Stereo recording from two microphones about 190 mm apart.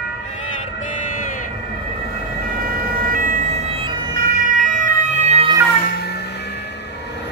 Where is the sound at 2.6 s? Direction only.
45° right (ahead or behind).